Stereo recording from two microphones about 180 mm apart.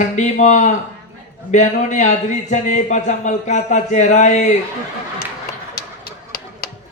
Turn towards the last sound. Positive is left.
turn(degrees=55)  # may be behind; listen again after turning